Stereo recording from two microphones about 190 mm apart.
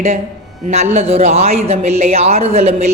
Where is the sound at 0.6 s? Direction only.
35° right (ahead or behind).